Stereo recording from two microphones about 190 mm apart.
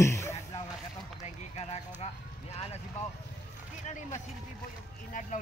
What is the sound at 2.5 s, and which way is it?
Vehicle, 30° left (ahead or behind).